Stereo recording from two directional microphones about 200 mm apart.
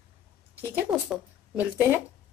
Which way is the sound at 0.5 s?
10° right (ahead or behind).